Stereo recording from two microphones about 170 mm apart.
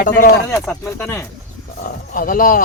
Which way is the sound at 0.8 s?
15° left (ahead or behind).